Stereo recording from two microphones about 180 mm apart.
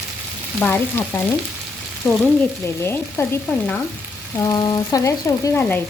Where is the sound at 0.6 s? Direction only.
10° left (ahead or behind).